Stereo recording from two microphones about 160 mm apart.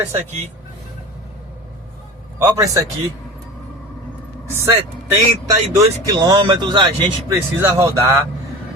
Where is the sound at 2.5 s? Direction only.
20° right (ahead or behind).